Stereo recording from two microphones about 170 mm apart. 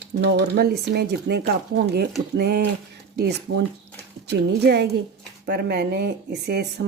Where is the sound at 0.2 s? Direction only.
65° right (ahead or behind).